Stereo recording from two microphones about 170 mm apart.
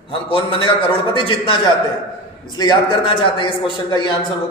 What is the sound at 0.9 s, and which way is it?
Speech, 30° left (ahead or behind).